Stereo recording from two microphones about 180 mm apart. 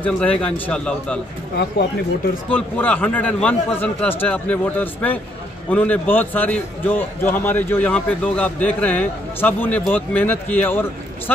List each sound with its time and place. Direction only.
0.0 s a man's voice: 10° left (ahead or behind)
2.5 s a man's voice: 10° left (ahead or behind)